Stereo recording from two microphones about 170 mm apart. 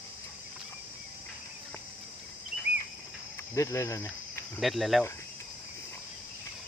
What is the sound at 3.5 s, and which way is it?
Speech, 20° left (ahead or behind).